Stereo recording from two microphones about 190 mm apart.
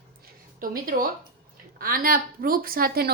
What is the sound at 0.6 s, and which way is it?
A woman's voice, 45° right (ahead or behind).